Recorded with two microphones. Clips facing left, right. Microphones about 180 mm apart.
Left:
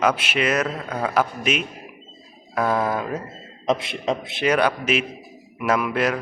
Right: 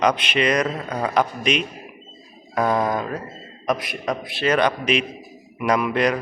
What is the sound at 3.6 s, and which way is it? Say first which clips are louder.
A man's voice: left 1 dB; 25° left (ahead or behind).